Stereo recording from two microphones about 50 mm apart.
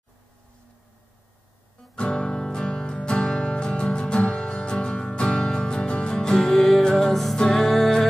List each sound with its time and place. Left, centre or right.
2.0 s music: centre
6.4 s music: centre